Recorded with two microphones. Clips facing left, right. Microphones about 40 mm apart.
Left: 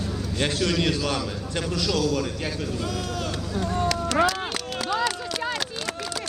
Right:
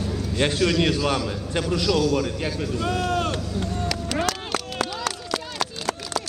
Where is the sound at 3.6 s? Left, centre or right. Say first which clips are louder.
Left 3 dB; left.